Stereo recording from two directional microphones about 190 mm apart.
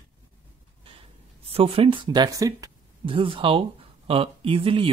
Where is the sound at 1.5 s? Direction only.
30° right (ahead or behind).